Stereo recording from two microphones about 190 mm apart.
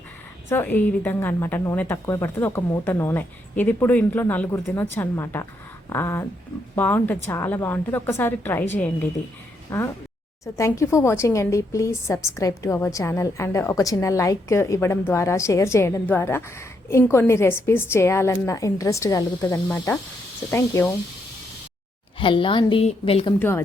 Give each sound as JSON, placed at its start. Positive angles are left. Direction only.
{"t": 0.5, "sound": "a woman's voice", "side_deg": 10}
{"t": 22.2, "sound": "a woman's voice", "side_deg": 25}